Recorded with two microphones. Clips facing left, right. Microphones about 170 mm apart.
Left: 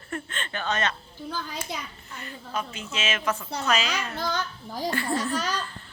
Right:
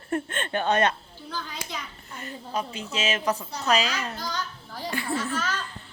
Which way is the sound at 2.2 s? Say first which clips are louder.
Right 2 dB; 35° right (ahead or behind).